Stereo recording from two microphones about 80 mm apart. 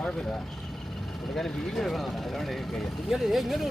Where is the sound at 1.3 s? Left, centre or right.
Centre.